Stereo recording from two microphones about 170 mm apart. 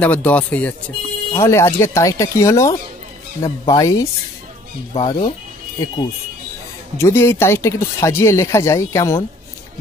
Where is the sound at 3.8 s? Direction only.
20° left (ahead or behind).